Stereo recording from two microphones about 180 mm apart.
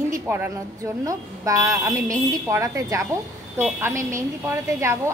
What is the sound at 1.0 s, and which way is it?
A woman's voice, 20° right (ahead or behind).